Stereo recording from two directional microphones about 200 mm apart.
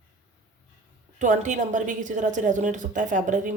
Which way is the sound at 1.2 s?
40° right (ahead or behind).